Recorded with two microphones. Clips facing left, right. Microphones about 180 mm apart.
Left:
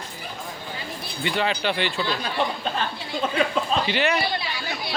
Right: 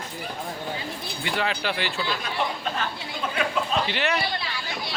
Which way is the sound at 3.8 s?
Centre (ahead or behind).